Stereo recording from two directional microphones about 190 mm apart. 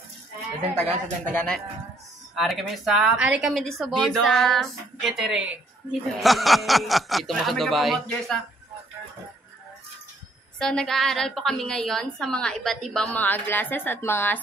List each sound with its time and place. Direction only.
1.2 s a woman's voice: 5° left (ahead or behind)
10.6 s a woman's voice: 5° left (ahead or behind)